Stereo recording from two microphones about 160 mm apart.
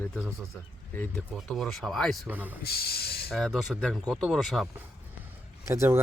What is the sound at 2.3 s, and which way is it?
Speech, 10° right (ahead or behind).